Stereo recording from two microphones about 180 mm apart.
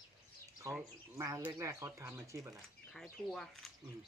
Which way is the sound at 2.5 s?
Centre (ahead or behind).